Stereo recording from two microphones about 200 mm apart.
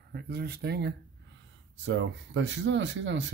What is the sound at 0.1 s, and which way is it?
Speech, 50° right (ahead or behind).